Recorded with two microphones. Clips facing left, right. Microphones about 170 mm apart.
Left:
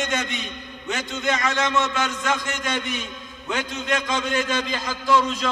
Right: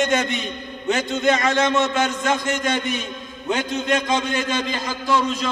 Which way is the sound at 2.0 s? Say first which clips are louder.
Right 4 dB; 50° right (ahead or behind).